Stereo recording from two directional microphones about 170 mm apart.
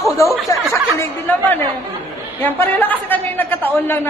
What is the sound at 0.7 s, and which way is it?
A man's voice, 15° left (ahead or behind).